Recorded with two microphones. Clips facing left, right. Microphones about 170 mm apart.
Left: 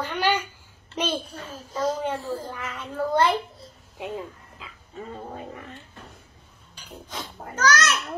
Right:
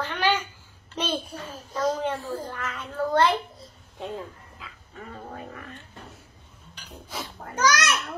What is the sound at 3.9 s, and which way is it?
Dog, 15° left (ahead or behind).